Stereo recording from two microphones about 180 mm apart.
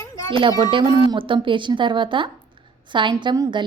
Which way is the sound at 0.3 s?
25° right (ahead or behind).